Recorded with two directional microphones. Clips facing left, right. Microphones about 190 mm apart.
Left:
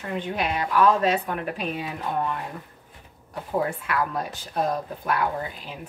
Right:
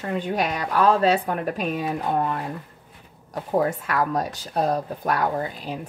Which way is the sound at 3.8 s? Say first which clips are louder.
Right 3 dB; 40° right (ahead or behind).